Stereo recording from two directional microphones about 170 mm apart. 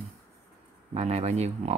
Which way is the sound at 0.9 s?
40° right (ahead or behind).